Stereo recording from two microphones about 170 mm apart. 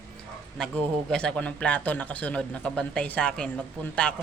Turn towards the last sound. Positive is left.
turn(degrees=5)  # may be behind; listen again after turning